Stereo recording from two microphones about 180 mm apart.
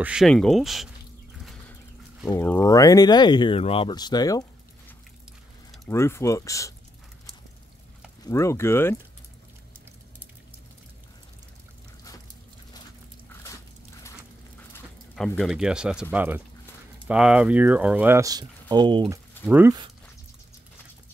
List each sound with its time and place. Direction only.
0.0 s speech: 5° right (ahead or behind)
2.2 s speech: 10° left (ahead or behind)
5.9 s speech: 15° left (ahead or behind)
8.3 s speech: 15° left (ahead or behind)
13.3 s a sound: 15° left (ahead or behind)
15.1 s speech: centre (ahead or behind); by 19.1 s 25° right (ahead or behind)
19.4 s speech: 10° right (ahead or behind)